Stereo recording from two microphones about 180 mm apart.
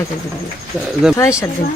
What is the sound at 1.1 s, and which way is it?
Speech, 15° left (ahead or behind).